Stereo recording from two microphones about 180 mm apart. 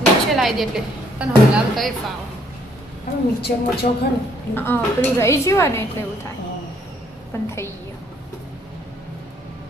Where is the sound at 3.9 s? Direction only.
40° left (ahead or behind).